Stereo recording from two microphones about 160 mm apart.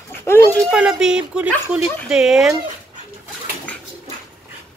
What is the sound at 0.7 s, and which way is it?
Speech, 5° right (ahead or behind).